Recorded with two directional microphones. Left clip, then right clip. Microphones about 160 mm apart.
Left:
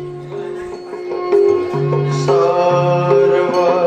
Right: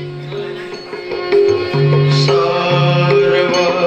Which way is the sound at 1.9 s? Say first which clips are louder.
Right 2 dB; 45° left (ahead or behind).